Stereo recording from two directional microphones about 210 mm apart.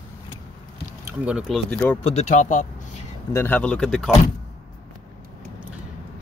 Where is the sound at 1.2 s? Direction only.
5° right (ahead or behind).